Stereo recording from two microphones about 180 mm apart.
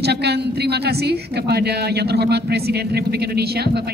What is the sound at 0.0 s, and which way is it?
A woman's voice, 65° right (ahead or behind).